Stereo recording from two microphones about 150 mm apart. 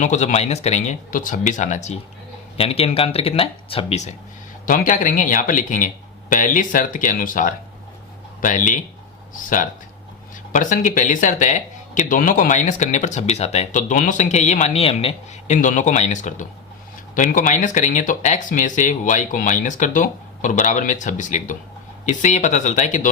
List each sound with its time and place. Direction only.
0.0 s speech: 55° left (ahead or behind)
2.6 s speech: 40° left (ahead or behind)
4.6 s speech: 60° left (ahead or behind)